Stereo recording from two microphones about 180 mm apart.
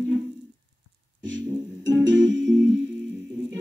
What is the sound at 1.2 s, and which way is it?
Music, 90° right.